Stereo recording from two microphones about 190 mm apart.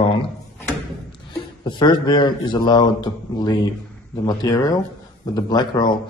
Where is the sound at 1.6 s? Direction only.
25° left (ahead or behind).